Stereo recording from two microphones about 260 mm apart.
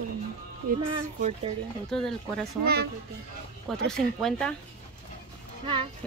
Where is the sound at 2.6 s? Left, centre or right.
Right.